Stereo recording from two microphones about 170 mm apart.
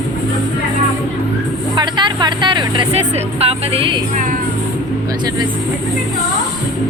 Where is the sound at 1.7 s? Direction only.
25° right (ahead or behind).